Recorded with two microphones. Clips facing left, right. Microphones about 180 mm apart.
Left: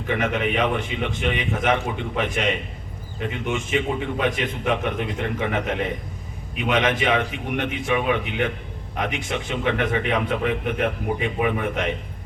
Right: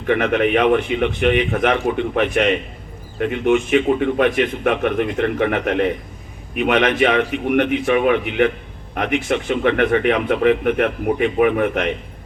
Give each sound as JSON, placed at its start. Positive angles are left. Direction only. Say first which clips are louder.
{"t": 0.1, "sound": "speech", "louder": "right 7 dB", "side_deg": -55}
{"t": 6.6, "sound": "speech", "louder": "right 6 dB", "side_deg": -55}